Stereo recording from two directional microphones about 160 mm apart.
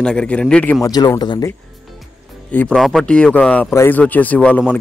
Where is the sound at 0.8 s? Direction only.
25° left (ahead or behind).